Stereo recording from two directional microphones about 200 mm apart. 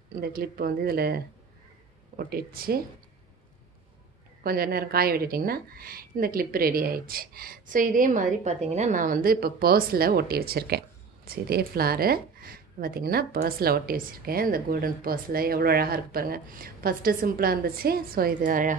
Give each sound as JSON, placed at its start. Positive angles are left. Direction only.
{"t": 0.1, "sound": "speech", "side_deg": -50}
{"t": 4.4, "sound": "speech", "side_deg": -50}